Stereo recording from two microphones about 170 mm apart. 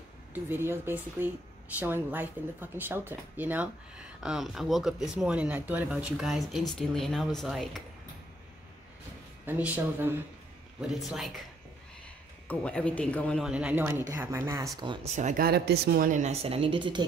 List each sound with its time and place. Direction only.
0.3 s speech: 15° right (ahead or behind)
9.5 s speech: 10° right (ahead or behind)
12.4 s speech: 5° left (ahead or behind)
13.4 s speech: 5° right (ahead or behind)
15.1 s speech: 45° right (ahead or behind)
15.4 s speech: 70° right (ahead or behind)
16.1 s speech: 45° right (ahead or behind)